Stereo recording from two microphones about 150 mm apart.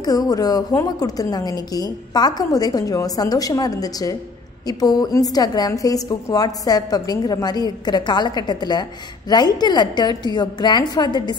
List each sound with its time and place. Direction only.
0.0 s a woman's voice: 25° left (ahead or behind)